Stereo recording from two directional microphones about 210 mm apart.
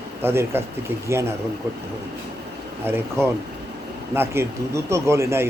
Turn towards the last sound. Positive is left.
turn(degrees=-10)  # may be behind; listen again after turning